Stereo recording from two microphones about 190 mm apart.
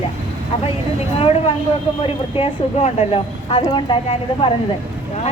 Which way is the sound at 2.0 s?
30° left (ahead or behind).